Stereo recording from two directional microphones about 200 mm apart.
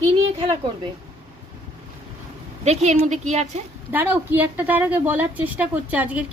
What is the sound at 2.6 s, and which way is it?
Speech, 35° right (ahead or behind).